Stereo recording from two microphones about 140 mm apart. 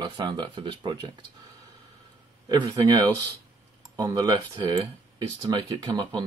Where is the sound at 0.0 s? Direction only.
35° right (ahead or behind).